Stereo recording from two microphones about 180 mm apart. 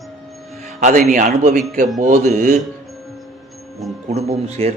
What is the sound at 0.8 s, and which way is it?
Speech, 45° right (ahead or behind).